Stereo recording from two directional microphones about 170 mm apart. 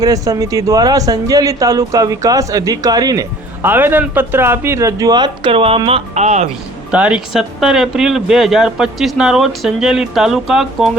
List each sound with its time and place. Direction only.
0.0 s speech: 20° right (ahead or behind); by 6.5 s 40° right (ahead or behind)
6.9 s speech: 5° right (ahead or behind)